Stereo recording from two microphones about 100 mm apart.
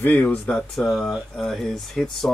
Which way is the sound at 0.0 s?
20° left (ahead or behind).